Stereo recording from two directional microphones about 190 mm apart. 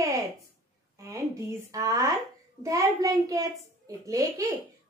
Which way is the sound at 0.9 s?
15° right (ahead or behind).